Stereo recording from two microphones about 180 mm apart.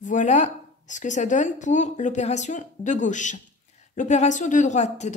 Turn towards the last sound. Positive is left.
turn(degrees=40)  # may be behind; listen again after turning